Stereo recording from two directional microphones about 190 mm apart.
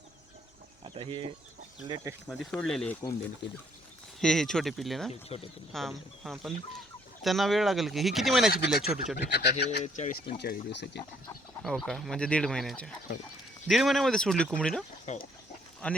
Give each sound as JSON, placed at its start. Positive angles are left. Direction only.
{"t": 0.9, "sound": "speech", "side_deg": -25}
{"t": 2.2, "sound": "speech", "side_deg": 0}
{"t": 4.2, "sound": "speech", "side_deg": 5}
{"t": 9.1, "sound": "speech", "side_deg": 60}
{"t": 9.8, "sound": "speech", "side_deg": 40}
{"t": 10.2, "sound": "speech", "side_deg": 55}
{"t": 11.6, "sound": "speech", "side_deg": 0}
{"t": 15.0, "sound": "speech", "side_deg": 35}
{"t": 15.8, "sound": "speech", "side_deg": 5}